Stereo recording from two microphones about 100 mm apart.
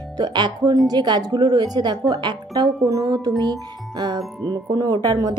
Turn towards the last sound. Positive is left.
turn(degrees=-40)  # may be behind; listen again after turning